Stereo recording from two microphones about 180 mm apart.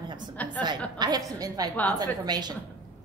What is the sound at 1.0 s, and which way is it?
A woman's voice, 20° right (ahead or behind).